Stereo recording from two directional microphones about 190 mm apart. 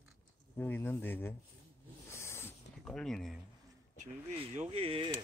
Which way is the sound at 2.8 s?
5° left (ahead or behind).